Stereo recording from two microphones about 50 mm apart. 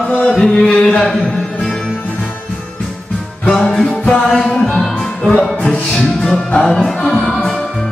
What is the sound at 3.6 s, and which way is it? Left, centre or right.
Music, centre.